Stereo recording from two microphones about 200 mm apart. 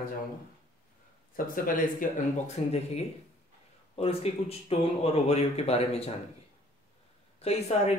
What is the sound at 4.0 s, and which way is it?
Speech, 30° left (ahead or behind).